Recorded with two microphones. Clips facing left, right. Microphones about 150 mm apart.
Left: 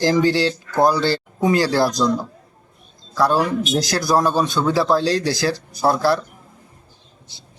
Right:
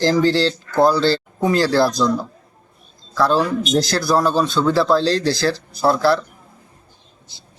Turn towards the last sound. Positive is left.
turn(degrees=15)  # may be behind; listen again after turning